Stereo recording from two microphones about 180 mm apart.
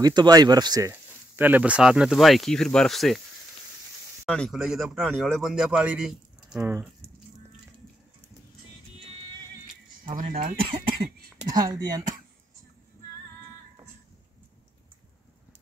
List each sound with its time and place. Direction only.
0.0 s speech: 20° right (ahead or behind); by 3.2 s centre (ahead or behind)
4.3 s speech: centre (ahead or behind)
10.3 s speech: 30° right (ahead or behind)